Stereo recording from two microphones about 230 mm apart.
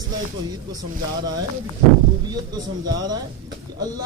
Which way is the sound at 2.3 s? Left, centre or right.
Centre.